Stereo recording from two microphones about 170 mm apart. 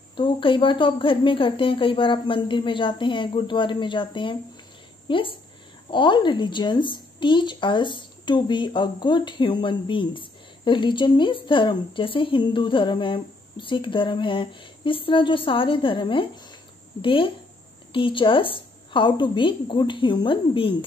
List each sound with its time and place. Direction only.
0.1 s a woman's voice: 30° left (ahead or behind)